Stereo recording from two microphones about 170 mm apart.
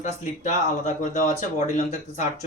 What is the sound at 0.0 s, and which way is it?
Speech, 45° left (ahead or behind).